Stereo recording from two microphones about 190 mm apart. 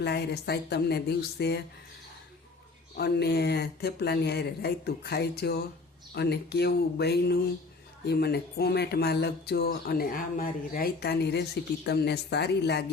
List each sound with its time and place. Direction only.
0.0 s speech: 60° left (ahead or behind)
3.0 s speech: 60° left (ahead or behind)